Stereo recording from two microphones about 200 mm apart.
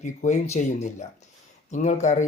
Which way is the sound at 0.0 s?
35° left (ahead or behind).